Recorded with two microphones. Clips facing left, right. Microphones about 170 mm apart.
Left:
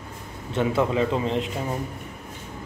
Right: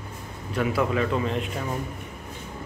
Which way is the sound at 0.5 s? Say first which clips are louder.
Left 2 dB; 25° left (ahead or behind).